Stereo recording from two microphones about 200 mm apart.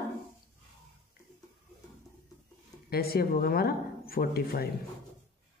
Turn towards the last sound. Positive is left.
turn(degrees=50)  # may be behind; listen again after turning